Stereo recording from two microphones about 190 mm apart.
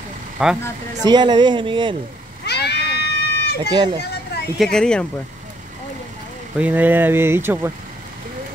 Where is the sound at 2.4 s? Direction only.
60° left (ahead or behind).